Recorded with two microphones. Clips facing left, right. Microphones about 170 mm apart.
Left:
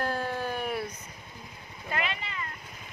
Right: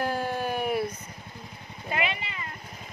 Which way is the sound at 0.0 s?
10° right (ahead or behind).